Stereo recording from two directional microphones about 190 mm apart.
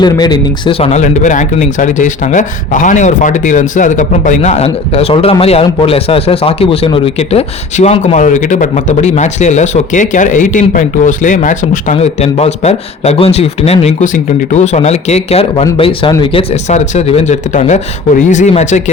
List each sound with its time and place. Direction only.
0.0 s speech: 20° left (ahead or behind); by 18.8 s 40° left (ahead or behind)